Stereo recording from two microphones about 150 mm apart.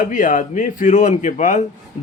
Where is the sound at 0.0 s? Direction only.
60° left (ahead or behind).